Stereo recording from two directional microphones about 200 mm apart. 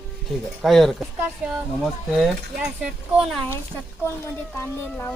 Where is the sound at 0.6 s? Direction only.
Centre (ahead or behind).